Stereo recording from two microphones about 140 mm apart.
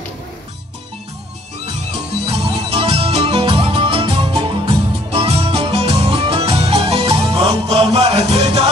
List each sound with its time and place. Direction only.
1.7 s music: 45° right (ahead or behind)